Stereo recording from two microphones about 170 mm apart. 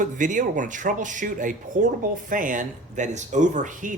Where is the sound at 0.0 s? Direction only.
50° right (ahead or behind).